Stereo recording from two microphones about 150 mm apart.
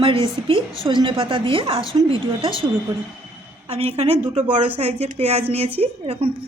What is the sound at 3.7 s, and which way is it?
A woman's voice, 45° right (ahead or behind).